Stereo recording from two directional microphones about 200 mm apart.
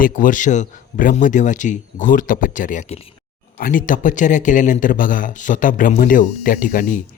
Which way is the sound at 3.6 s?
45° left (ahead or behind).